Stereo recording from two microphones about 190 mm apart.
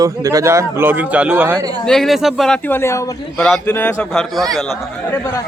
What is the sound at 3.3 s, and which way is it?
Speech, 5° left (ahead or behind).